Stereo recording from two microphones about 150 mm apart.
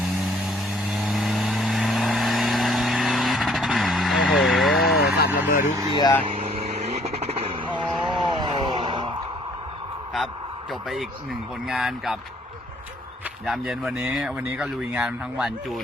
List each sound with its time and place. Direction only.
0.9 s vehicle: centre (ahead or behind)
4.9 s vehicle: 90° left
5.5 s vehicle: 65° left (ahead or behind)
5.7 s vehicle: 25° right (ahead or behind)
6.3 s vehicle: 45° right (ahead or behind)
8.0 s a sound: 30° right (ahead or behind)
10.7 s speech: centre (ahead or behind)
13.4 s speech: 5° right (ahead or behind)